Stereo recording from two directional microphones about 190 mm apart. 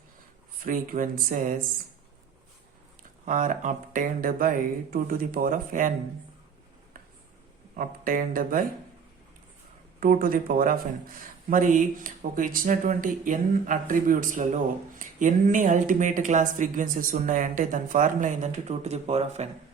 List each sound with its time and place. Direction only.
0.6 s speech: 45° right (ahead or behind)
3.2 s speech: 40° right (ahead or behind)
7.8 s speech: 45° right (ahead or behind)
10.0 s speech: 50° right (ahead or behind)